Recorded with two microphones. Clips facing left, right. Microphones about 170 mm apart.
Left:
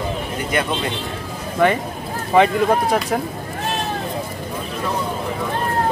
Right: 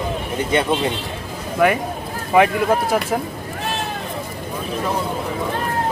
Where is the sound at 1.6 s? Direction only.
10° right (ahead or behind).